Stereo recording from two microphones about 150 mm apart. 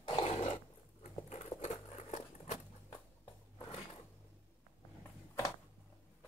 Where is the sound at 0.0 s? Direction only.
40° left (ahead or behind).